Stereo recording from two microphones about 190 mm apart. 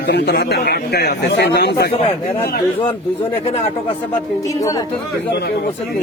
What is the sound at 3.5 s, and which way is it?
Speech, 30° left (ahead or behind).